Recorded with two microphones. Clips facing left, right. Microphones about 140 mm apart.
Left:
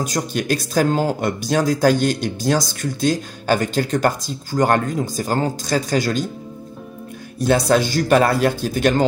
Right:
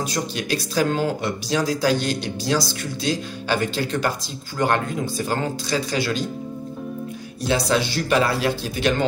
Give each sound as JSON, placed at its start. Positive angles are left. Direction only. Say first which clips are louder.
{"t": 0.0, "sound": "speech", "louder": "left 3 dB", "side_deg": 45}
{"t": 7.3, "sound": "speech", "louder": "left 5 dB", "side_deg": 50}